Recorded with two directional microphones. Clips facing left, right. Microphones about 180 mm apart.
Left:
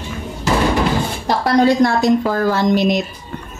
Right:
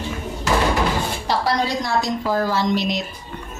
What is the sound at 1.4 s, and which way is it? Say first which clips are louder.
A woman's voice: left 12 dB; 55° left (ahead or behind).